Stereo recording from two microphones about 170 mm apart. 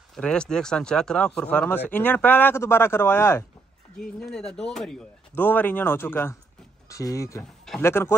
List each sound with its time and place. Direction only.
0.1 s speech: 5° left (ahead or behind)
4.2 s speech: 5° left (ahead or behind)